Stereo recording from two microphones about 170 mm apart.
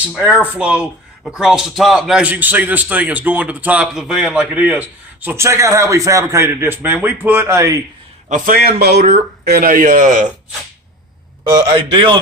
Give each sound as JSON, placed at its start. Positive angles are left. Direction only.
{"t": 0.0, "sound": "speech", "side_deg": -10}
{"t": 8.3, "sound": "speech", "side_deg": -55}
{"t": 11.5, "sound": "a man's voice", "side_deg": -25}